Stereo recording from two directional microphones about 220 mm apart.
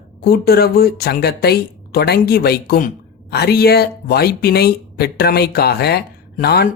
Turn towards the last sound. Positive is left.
turn(degrees=45)  # may be behind; listen again after turning